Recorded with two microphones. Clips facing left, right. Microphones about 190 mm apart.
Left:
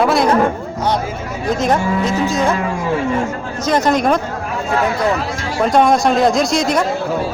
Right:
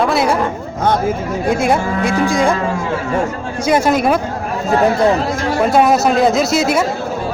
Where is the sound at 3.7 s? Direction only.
10° right (ahead or behind).